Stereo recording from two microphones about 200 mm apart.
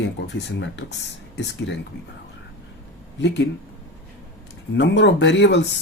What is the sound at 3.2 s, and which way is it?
Speech, 60° left (ahead or behind).